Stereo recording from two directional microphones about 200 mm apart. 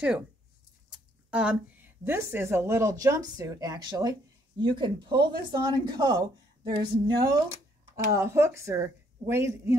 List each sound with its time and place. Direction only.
0.9 s a woman's voice: 5° right (ahead or behind)